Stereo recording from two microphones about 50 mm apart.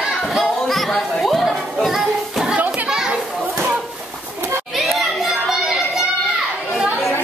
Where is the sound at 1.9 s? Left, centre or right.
Centre.